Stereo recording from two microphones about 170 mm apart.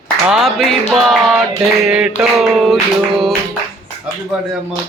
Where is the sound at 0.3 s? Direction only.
Centre (ahead or behind).